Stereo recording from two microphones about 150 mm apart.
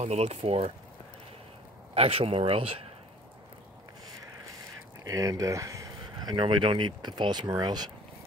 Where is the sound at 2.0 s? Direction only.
40° right (ahead or behind).